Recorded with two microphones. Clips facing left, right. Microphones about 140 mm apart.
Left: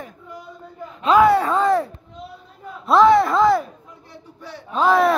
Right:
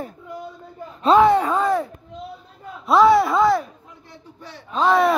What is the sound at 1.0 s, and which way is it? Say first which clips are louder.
Speech: even; 25° right (ahead or behind).